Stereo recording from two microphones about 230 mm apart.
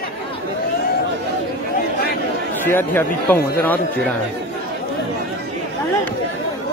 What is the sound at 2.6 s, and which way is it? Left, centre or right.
Speech, centre.